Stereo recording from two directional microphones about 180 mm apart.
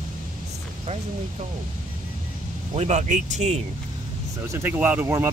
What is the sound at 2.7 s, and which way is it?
Speech, 40° right (ahead or behind).